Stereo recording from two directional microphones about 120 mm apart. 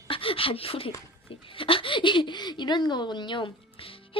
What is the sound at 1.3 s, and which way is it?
A woman's voice, 50° left (ahead or behind).